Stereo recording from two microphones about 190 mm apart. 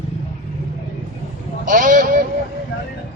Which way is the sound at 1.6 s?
45° right (ahead or behind).